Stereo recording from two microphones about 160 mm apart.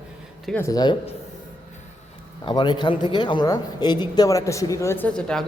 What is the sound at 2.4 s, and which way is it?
Speech, 30° left (ahead or behind).